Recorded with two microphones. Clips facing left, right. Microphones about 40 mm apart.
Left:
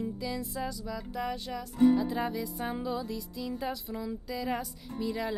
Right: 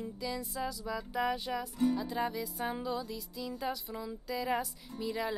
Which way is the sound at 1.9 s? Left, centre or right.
Centre.